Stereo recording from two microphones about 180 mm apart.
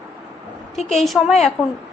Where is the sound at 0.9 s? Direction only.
Centre (ahead or behind).